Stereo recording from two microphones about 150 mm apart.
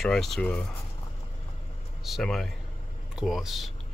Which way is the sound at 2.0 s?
Centre (ahead or behind).